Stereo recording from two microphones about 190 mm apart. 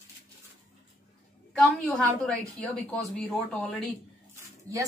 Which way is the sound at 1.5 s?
Centre (ahead or behind).